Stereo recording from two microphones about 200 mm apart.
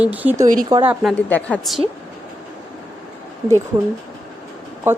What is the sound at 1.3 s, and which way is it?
Speech, 5° left (ahead or behind).